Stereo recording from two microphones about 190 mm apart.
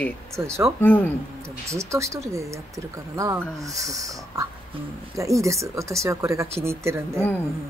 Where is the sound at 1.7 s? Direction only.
15° right (ahead or behind).